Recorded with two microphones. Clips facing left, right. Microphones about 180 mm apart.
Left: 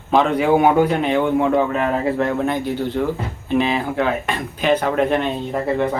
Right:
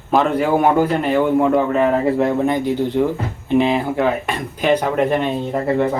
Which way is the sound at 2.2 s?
15° right (ahead or behind).